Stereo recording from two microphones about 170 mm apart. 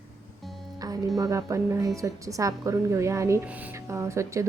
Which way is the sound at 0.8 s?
20° right (ahead or behind).